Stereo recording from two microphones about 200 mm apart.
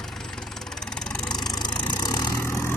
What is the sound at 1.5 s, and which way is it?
Vehicle, 20° left (ahead or behind).